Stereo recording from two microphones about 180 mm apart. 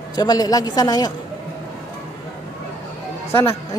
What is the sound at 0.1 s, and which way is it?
A woman's voice, 20° left (ahead or behind).